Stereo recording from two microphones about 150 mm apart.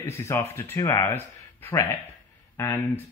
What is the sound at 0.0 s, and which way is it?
Speech, 15° left (ahead or behind).